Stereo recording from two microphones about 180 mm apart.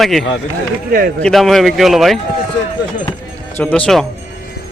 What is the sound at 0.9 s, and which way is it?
Speech, 55° right (ahead or behind).